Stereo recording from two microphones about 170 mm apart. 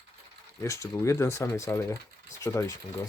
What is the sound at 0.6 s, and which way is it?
Speech, 20° left (ahead or behind).